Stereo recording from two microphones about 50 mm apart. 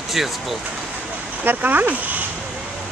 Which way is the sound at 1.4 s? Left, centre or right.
Right.